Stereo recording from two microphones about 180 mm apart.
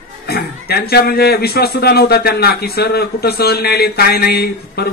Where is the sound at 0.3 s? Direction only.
60° left (ahead or behind).